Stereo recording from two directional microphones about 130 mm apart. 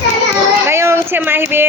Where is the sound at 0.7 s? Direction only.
20° right (ahead or behind).